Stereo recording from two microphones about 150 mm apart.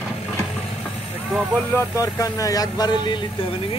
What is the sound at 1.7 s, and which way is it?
Speech, 20° left (ahead or behind).